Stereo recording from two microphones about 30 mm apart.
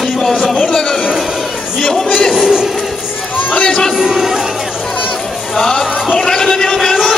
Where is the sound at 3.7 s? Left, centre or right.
Centre.